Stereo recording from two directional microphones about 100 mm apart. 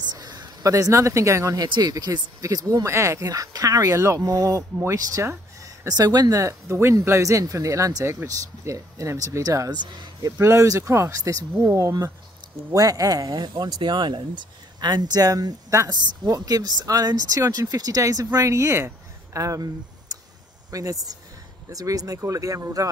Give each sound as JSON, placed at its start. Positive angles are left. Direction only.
{"t": 0.0, "sound": "speech", "side_deg": -40}
{"t": 9.7, "sound": "speech", "side_deg": -50}
{"t": 10.3, "sound": "speech", "side_deg": -30}